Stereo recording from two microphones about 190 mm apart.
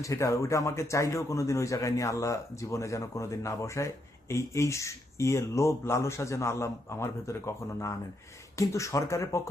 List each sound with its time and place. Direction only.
0.0 s a man's voice: 15° left (ahead or behind)